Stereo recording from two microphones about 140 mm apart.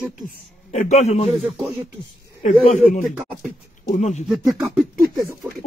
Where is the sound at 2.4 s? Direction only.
55° left (ahead or behind).